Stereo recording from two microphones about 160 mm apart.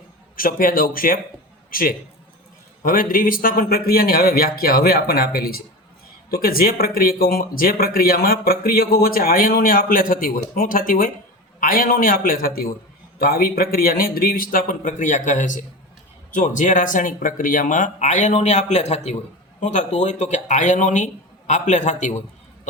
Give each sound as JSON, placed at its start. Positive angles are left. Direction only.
{"t": 0.3, "sound": "speech", "side_deg": 60}